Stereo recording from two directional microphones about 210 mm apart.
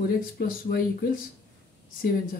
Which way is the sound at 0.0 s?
45° left (ahead or behind).